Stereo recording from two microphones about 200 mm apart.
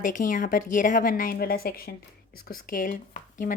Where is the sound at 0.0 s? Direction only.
40° left (ahead or behind).